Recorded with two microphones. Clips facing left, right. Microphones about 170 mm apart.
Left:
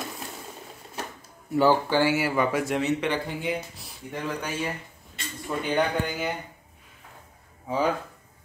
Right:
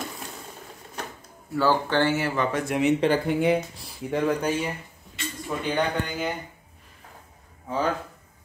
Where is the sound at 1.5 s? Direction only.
15° left (ahead or behind).